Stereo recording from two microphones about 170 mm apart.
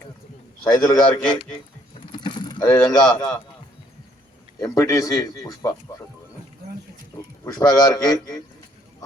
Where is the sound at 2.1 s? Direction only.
25° left (ahead or behind).